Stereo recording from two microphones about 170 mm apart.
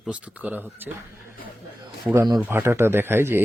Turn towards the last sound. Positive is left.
turn(degrees=-15)  # may be behind; listen again after turning